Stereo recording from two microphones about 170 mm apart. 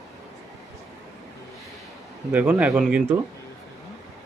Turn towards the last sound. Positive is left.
turn(degrees=-5)  # may be behind; listen again after turning